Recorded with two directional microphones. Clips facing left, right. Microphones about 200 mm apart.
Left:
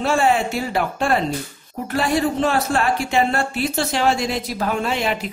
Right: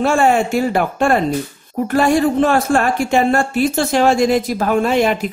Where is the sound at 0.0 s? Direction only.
50° right (ahead or behind).